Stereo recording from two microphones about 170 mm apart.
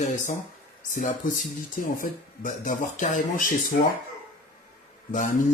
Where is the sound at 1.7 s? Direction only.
50° left (ahead or behind).